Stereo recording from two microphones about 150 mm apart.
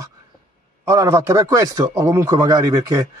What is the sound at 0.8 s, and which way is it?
Speech, 20° right (ahead or behind).